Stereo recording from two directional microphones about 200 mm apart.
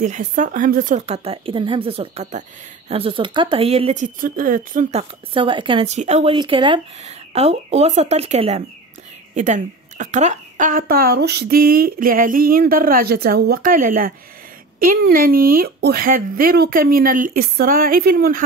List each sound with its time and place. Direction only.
0.0 s speech: 40° right (ahead or behind)
5.3 s a woman's voice: 25° right (ahead or behind); by 18.4 s 45° right (ahead or behind)